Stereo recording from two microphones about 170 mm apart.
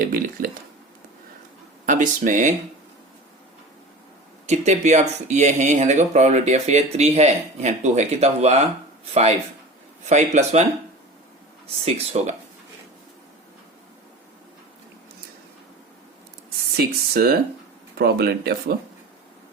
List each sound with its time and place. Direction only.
0.0 s speech: 60° right (ahead or behind)
1.9 s speech: 50° right (ahead or behind)
4.4 s speech: 40° right (ahead or behind)
10.1 s speech: 45° right (ahead or behind)
16.7 s speech: 65° right (ahead or behind)